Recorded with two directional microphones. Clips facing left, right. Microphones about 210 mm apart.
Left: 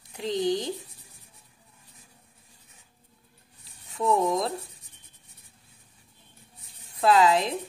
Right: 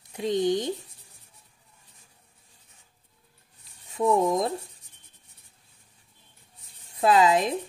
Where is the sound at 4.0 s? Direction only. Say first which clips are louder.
Right 2 dB; 20° right (ahead or behind).